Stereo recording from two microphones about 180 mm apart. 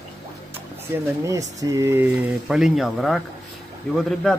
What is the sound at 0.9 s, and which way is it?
Speech, 15° right (ahead or behind).